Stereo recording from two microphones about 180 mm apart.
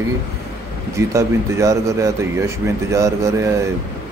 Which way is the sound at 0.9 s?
15° right (ahead or behind).